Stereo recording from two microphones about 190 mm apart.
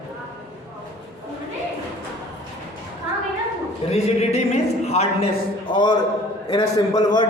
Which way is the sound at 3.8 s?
35° left (ahead or behind).